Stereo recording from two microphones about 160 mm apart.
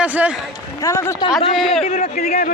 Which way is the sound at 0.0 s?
10° right (ahead or behind).